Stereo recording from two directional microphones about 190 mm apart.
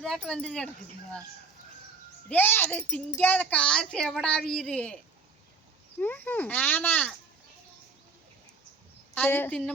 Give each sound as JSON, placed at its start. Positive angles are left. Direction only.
{"t": 0.0, "sound": "a woman's voice", "side_deg": 5}
{"t": 2.3, "sound": "a woman's voice", "side_deg": 10}
{"t": 6.0, "sound": "speech", "side_deg": 10}
{"t": 9.1, "sound": "speech", "side_deg": 10}